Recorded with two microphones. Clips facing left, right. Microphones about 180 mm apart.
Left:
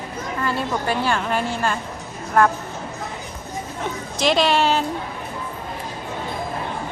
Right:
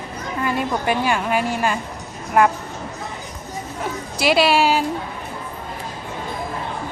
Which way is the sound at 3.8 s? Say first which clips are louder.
Even; 10° right (ahead or behind).